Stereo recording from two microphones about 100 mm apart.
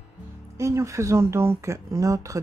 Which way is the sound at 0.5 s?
30° right (ahead or behind).